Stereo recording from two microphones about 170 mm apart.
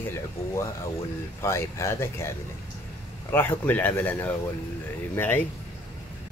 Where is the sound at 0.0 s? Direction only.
15° left (ahead or behind).